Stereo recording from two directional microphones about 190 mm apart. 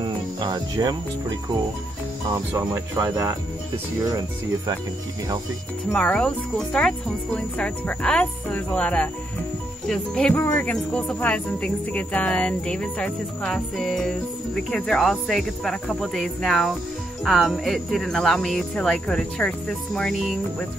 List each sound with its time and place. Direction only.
0.4 s speech: 20° right (ahead or behind)
2.3 s speech: 15° right (ahead or behind)
5.9 s speech: 5° left (ahead or behind)